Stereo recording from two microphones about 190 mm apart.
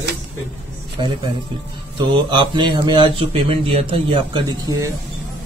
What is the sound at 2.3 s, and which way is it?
A man's voice, 25° right (ahead or behind).